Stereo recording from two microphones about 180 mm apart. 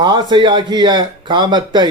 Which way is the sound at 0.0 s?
25° right (ahead or behind).